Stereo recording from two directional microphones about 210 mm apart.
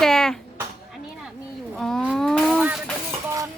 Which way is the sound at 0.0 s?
Centre (ahead or behind).